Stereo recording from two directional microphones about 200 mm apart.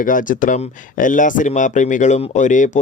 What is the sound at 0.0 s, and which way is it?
Speech, 40° left (ahead or behind).